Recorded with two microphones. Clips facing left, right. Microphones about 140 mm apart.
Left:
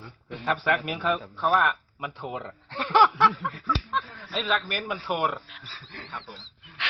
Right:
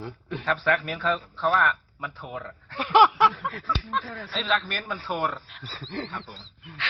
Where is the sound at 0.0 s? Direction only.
90° right.